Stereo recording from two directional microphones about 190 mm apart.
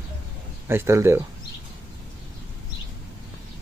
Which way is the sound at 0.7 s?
15° right (ahead or behind).